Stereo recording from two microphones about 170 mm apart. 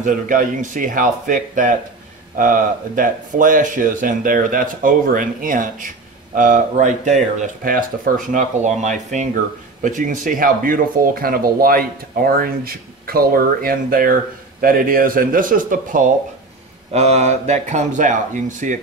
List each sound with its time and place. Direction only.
0.0 s speech: 50° right (ahead or behind)
16.9 s speech: 40° right (ahead or behind)